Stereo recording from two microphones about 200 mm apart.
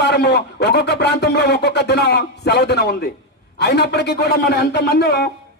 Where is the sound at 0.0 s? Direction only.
55° left (ahead or behind).